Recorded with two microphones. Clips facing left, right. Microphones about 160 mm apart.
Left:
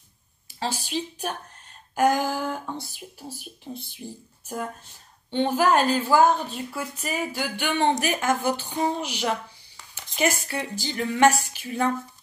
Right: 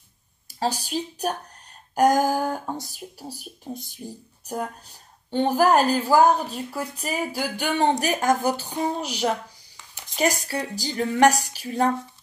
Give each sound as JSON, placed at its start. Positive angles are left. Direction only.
{"t": 0.5, "sound": "a woman's voice", "side_deg": -40}